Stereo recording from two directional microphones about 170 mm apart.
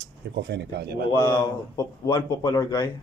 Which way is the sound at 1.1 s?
25° left (ahead or behind).